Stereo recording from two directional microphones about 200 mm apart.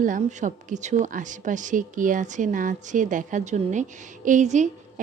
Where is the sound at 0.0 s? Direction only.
40° right (ahead or behind).